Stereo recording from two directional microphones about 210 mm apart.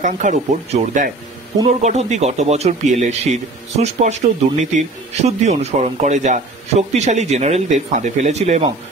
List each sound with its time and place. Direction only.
0.0 s speech: 35° right (ahead or behind)